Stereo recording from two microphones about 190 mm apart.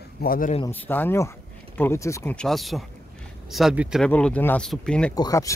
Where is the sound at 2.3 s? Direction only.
Centre (ahead or behind).